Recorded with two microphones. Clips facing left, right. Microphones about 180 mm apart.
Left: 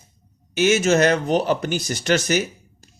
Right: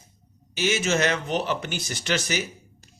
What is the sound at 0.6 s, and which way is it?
A man's voice, 45° left (ahead or behind).